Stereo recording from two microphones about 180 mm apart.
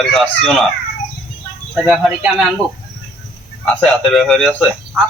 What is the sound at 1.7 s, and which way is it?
Speech, centre (ahead or behind).